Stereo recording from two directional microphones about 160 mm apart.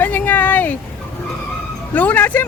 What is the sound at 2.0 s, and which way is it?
Speech, 10° left (ahead or behind).